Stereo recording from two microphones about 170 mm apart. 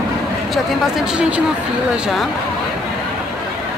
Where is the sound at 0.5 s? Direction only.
5° right (ahead or behind).